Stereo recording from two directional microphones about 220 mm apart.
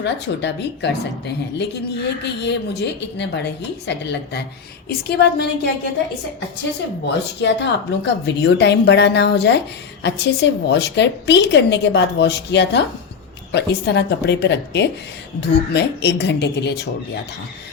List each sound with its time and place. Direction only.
0.0 s a woman's voice: 50° left (ahead or behind)
2.2 s a woman's voice: 50° left (ahead or behind)
7.4 s a woman's voice: 50° left (ahead or behind)